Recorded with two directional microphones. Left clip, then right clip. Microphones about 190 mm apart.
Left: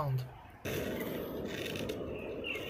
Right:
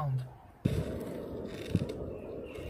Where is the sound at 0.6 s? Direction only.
Centre (ahead or behind).